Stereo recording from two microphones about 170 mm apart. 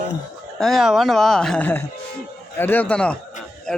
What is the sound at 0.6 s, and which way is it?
Speech, centre (ahead or behind).